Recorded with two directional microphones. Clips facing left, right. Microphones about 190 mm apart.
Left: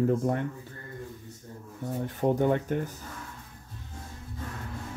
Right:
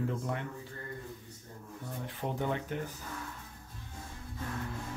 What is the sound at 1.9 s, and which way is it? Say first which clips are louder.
Speech: left 11 dB; 45° left (ahead or behind).